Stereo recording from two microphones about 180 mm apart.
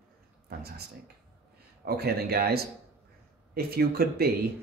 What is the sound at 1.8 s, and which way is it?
Speech, 60° right (ahead or behind).